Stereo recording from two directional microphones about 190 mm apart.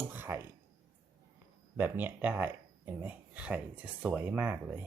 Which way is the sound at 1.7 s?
10° right (ahead or behind).